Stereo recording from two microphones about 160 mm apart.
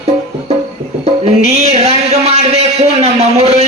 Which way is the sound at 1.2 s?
40° right (ahead or behind).